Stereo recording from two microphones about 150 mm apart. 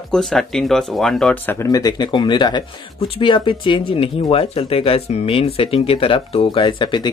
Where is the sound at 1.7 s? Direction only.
25° left (ahead or behind).